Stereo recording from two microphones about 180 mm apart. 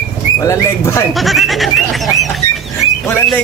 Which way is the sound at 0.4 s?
15° left (ahead or behind).